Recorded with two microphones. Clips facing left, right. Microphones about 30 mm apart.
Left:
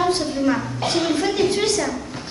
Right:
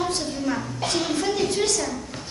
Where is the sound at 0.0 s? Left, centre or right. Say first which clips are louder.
Left 6 dB; left.